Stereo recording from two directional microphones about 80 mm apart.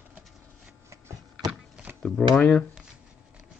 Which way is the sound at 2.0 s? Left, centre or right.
Centre.